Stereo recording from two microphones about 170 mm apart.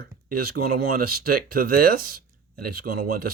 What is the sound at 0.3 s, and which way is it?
Speech, 60° right (ahead or behind).